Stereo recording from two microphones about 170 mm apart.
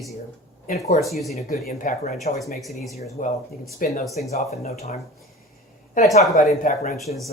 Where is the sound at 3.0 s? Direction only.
50° left (ahead or behind).